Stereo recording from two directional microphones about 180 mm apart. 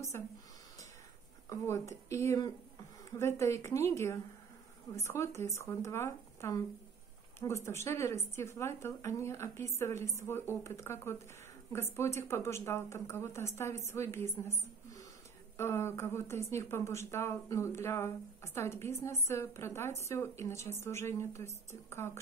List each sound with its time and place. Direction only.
1.5 s speech: 15° left (ahead or behind)